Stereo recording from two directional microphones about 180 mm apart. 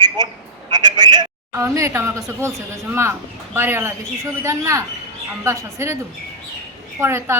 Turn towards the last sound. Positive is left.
turn(degrees=-15)  # may be behind; listen again after turning